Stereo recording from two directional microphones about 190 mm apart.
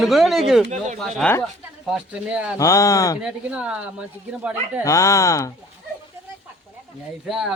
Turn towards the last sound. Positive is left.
turn(degrees=-5)  # may be behind; listen again after turning